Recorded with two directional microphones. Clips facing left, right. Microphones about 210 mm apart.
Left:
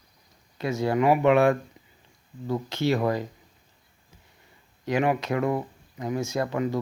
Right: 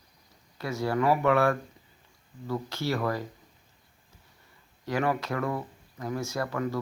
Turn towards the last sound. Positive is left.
turn(degrees=20)  # may be behind; listen again after turning